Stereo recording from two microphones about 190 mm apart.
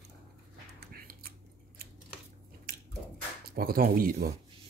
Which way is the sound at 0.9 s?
50° right (ahead or behind).